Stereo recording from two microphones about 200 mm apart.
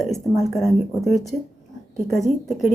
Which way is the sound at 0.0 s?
Centre (ahead or behind).